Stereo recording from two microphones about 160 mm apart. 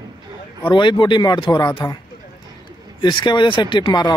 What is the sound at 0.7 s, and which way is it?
Speech, 30° left (ahead or behind).